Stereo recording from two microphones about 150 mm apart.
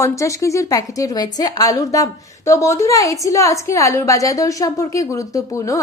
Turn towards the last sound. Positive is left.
turn(degrees=20)  # may be behind; listen again after turning